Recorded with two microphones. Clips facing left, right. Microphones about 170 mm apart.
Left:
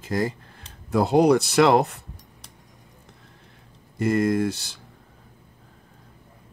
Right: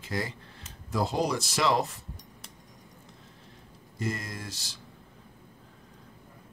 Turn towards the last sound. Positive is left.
turn(degrees=60)  # may be behind; listen again after turning